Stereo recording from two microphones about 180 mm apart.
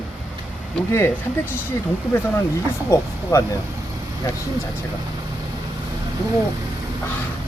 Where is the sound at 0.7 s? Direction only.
10° left (ahead or behind).